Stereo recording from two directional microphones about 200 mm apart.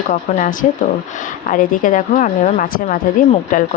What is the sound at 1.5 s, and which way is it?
Speech, 45° left (ahead or behind).